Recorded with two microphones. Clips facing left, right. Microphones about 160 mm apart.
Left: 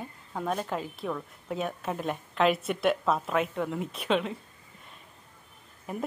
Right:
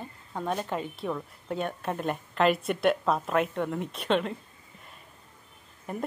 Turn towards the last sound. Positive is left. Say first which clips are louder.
# even
turn(degrees=0)  # may be behind; listen again after turning